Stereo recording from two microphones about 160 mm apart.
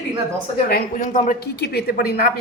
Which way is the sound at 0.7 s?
55° left (ahead or behind).